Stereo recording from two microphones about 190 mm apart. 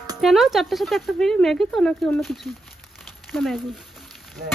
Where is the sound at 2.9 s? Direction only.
Centre (ahead or behind).